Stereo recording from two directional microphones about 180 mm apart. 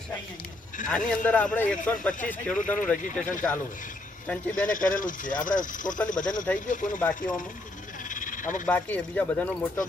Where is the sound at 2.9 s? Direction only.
45° left (ahead or behind).